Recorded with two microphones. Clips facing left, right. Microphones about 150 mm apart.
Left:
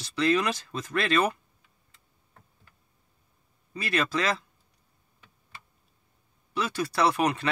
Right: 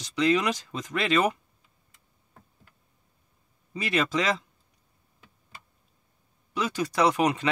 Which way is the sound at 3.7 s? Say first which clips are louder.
Right 2 dB; 15° right (ahead or behind).